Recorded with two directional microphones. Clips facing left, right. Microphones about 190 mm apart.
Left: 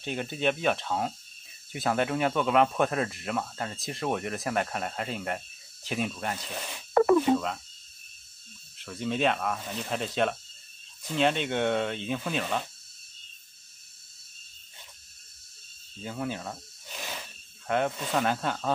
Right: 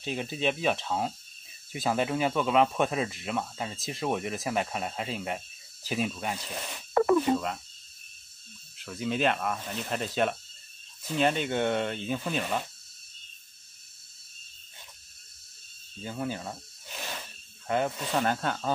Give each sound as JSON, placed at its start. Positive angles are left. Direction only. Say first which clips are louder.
{"t": 0.0, "sound": "speech", "louder": "left 1 dB", "side_deg": 0}
{"t": 6.9, "sound": "a sound", "louder": "left 2 dB", "side_deg": 50}
{"t": 7.3, "sound": "speech", "louder": "left 1 dB", "side_deg": -5}
{"t": 8.7, "sound": "speech", "louder": "even", "side_deg": -5}
{"t": 16.0, "sound": "speech", "louder": "even", "side_deg": 0}
{"t": 17.6, "sound": "speech", "louder": "left 1 dB", "side_deg": 0}